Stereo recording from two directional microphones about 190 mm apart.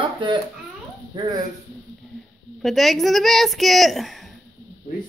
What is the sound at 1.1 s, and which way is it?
Speech, 20° right (ahead or behind).